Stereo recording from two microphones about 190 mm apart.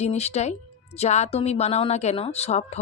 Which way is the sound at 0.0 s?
35° left (ahead or behind).